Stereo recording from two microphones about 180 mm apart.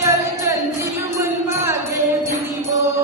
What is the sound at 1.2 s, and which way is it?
Music, 15° right (ahead or behind).